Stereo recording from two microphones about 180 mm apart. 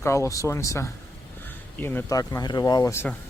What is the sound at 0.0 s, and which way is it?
Speech, 15° left (ahead or behind).